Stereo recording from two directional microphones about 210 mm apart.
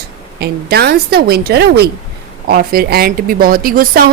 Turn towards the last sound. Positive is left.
turn(degrees=-45)  # may be behind; listen again after turning